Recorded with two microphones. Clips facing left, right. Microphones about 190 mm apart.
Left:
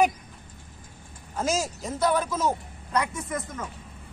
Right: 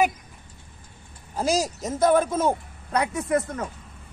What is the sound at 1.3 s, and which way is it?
A woman's voice, 35° right (ahead or behind).